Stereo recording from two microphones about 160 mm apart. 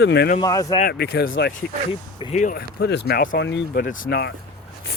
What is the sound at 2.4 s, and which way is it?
Speech, 65° left (ahead or behind).